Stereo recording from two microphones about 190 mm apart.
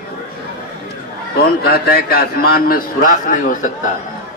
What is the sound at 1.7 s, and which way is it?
A man's voice, 55° left (ahead or behind).